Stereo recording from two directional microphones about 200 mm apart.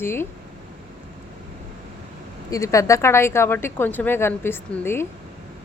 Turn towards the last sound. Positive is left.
turn(degrees=10)  # may be behind; listen again after turning